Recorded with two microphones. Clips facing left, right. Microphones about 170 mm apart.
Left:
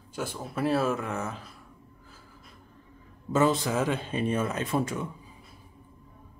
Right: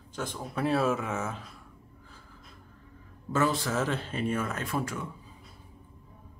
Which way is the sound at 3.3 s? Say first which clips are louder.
Left 3 dB; 20° left (ahead or behind).